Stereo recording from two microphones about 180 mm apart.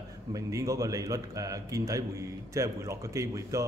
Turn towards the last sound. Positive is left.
turn(degrees=-15)  # may be behind; listen again after turning